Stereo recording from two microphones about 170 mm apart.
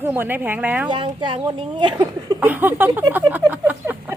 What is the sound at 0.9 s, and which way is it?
Speech, 30° right (ahead or behind).